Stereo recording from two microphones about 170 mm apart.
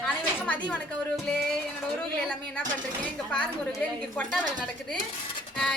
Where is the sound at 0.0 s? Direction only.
5° left (ahead or behind).